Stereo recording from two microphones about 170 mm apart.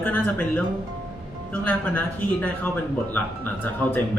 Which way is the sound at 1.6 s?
10° left (ahead or behind).